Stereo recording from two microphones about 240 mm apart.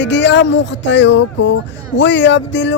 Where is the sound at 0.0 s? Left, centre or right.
Left.